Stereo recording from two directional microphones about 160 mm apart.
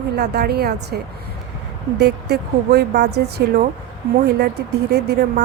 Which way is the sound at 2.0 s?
90° right.